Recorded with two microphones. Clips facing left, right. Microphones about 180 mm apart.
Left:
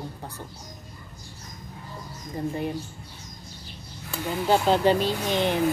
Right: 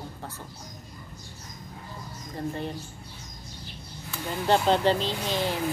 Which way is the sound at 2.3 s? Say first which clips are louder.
Left 3 dB; 10° left (ahead or behind).